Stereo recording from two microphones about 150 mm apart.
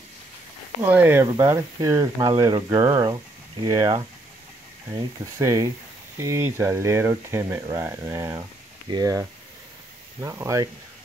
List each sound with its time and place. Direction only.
0.8 s speech: 15° right (ahead or behind)
1.2 s speech: 25° right (ahead or behind)
5.2 s speech: 20° right (ahead or behind)